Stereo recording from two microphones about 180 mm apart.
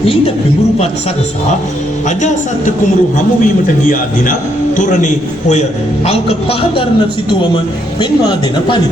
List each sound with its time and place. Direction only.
2.0 s a man's voice: 40° left (ahead or behind); by 7.6 s 25° left (ahead or behind)